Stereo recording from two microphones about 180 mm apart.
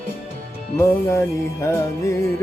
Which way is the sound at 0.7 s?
15° left (ahead or behind).